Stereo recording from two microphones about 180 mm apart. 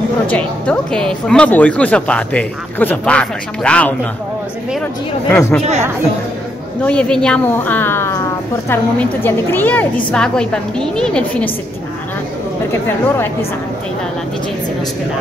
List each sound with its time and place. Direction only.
0.3 s a woman's voice: 5° left (ahead or behind)
5.3 s a woman's voice: 10° left (ahead or behind)
5.6 s speech: 40° right (ahead or behind)
6.8 s a woman's voice: 5° left (ahead or behind)